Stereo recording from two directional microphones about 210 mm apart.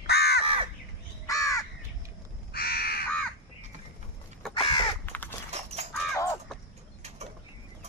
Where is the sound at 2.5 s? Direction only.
45° left (ahead or behind).